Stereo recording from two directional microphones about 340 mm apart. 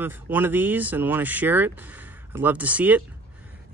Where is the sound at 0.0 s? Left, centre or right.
Centre.